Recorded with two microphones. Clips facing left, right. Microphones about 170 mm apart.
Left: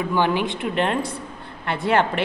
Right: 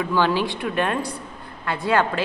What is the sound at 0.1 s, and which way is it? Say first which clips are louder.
A woman's voice: even; 20° left (ahead or behind).